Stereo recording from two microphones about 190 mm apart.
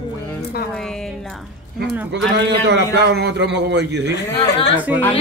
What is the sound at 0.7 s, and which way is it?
Speech, 5° left (ahead or behind).